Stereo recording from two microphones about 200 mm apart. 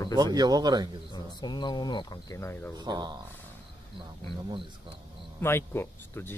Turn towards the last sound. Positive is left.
turn(degrees=10)  # may be behind; listen again after turning